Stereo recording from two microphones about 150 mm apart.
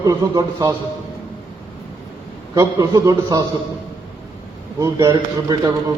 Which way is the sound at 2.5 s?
25° right (ahead or behind).